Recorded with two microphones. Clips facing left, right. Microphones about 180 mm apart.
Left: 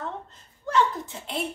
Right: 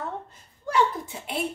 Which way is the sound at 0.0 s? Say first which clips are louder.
Right 1 dB; 10° right (ahead or behind).